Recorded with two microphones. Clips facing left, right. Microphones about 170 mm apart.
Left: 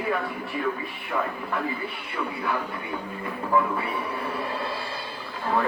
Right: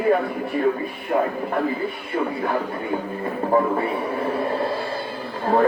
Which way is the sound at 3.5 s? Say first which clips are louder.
Right 4 dB; 40° right (ahead or behind).